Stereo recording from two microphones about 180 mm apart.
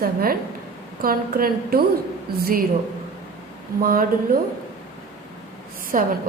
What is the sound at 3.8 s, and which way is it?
Speech, 50° right (ahead or behind).